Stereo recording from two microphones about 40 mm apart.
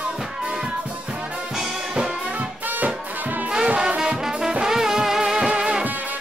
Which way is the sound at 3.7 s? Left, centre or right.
Right.